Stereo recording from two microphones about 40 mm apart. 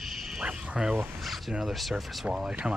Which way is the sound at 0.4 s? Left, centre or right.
Right.